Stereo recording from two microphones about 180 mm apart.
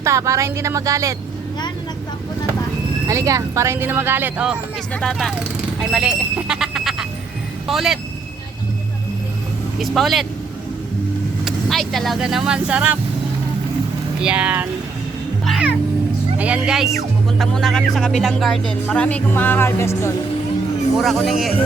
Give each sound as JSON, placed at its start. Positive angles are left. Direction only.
{"t": 0.0, "sound": "speech", "side_deg": -15}
{"t": 3.1, "sound": "speech", "side_deg": -15}
{"t": 9.8, "sound": "speech", "side_deg": 0}
{"t": 11.4, "sound": "speech", "side_deg": 0}
{"t": 14.2, "sound": "speech", "side_deg": -5}
{"t": 21.0, "sound": "speech", "side_deg": 0}